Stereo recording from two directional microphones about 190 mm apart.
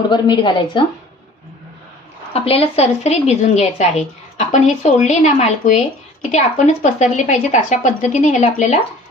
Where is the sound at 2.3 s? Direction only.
30° left (ahead or behind).